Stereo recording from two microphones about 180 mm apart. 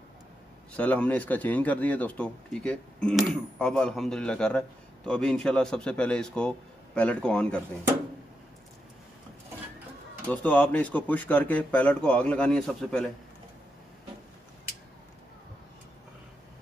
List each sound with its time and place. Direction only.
0.7 s speech: 10° left (ahead or behind)
10.2 s speech: 10° left (ahead or behind)